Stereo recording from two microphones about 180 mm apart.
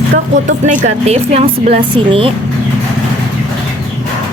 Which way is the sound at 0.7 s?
35° right (ahead or behind).